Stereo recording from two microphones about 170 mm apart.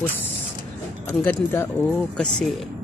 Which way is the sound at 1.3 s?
15° left (ahead or behind).